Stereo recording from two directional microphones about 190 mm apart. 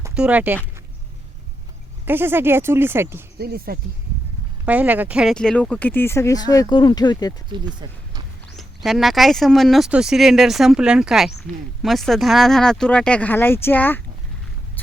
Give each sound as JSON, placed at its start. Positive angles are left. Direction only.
{"t": 0.1, "sound": "speech", "side_deg": -5}
{"t": 2.0, "sound": "speech", "side_deg": -10}
{"t": 3.3, "sound": "speech", "side_deg": -55}
{"t": 4.6, "sound": "speech", "side_deg": -10}
{"t": 7.5, "sound": "speech", "side_deg": -25}
{"t": 8.5, "sound": "speech", "side_deg": 0}